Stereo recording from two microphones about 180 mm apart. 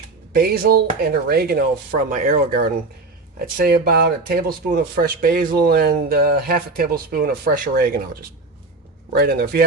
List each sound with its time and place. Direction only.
0.3 s speech: 55° right (ahead or behind)